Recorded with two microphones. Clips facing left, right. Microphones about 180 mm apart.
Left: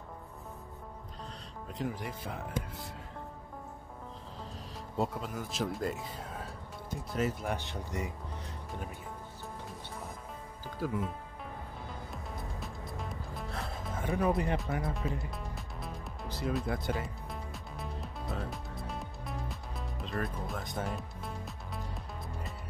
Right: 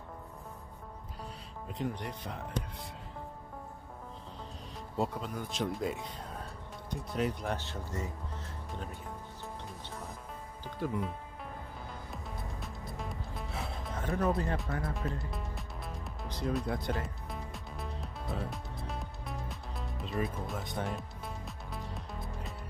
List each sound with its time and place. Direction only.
1.7 s speech: centre (ahead or behind)
4.9 s speech: centre (ahead or behind)
7.5 s speech: 15° left (ahead or behind)
10.6 s music: 5° left (ahead or behind)
12.1 s music: centre (ahead or behind); by 14.6 s 15° left (ahead or behind)
15.1 s music: centre (ahead or behind)